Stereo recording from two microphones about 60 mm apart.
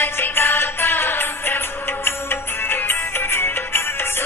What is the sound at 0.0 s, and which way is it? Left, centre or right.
Music, left.